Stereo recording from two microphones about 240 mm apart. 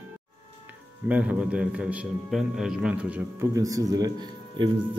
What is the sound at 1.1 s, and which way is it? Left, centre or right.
A man's voice, centre.